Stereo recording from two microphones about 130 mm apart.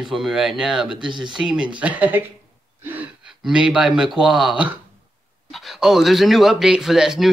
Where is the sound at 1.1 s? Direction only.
35° right (ahead or behind).